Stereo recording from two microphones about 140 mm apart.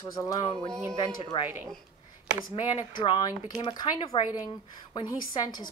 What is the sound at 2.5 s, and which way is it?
Speech, 30° left (ahead or behind).